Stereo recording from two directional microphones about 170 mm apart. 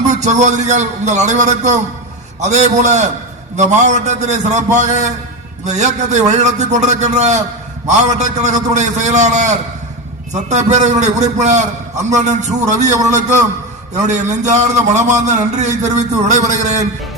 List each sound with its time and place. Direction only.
0.1 s a man's voice: 40° right (ahead or behind)